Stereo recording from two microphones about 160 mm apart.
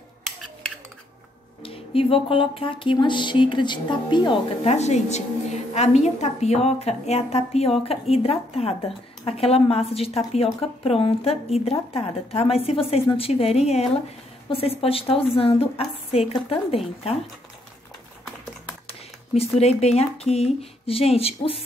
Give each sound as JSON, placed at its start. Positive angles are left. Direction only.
{"t": 1.6, "sound": "a woman's voice", "side_deg": 35}
{"t": 4.6, "sound": "a woman's voice", "side_deg": 45}
{"t": 19.3, "sound": "a woman's voice", "side_deg": 40}